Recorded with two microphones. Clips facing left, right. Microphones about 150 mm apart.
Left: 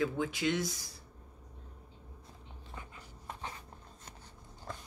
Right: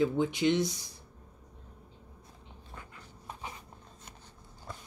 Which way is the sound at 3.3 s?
10° right (ahead or behind).